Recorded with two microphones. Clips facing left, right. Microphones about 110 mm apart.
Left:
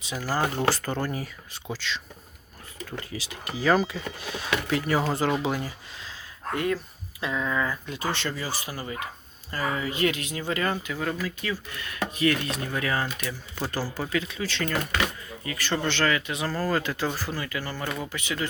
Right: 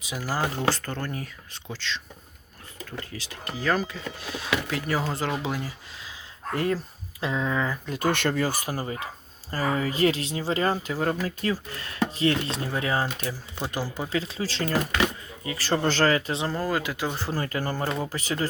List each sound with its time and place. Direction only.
0.0 s speech: 10° right (ahead or behind)
0.4 s speech: 5° left (ahead or behind)
3.1 s speech: 10° left (ahead or behind)
6.5 s speech: 35° right (ahead or behind)
7.9 s speech: 50° right (ahead or behind); by 13.8 s 15° right (ahead or behind)
14.1 s speech: 35° right (ahead or behind); by 17.2 s 10° right (ahead or behind)
17.3 s speech: 40° right (ahead or behind)